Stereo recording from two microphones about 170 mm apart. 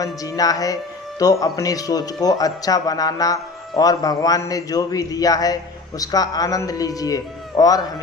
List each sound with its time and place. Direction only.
0.0 s a man's voice: 20° left (ahead or behind)